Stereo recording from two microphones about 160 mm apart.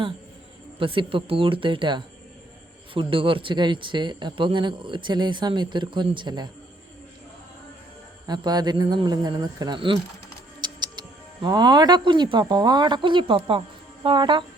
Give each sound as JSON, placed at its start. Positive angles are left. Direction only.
{"t": 0.8, "sound": "speech", "side_deg": -35}
{"t": 8.3, "sound": "speech", "side_deg": -25}